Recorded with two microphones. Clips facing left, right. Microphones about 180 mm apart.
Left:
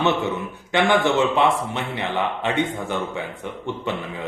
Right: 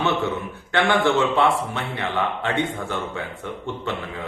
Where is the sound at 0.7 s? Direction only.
15° left (ahead or behind).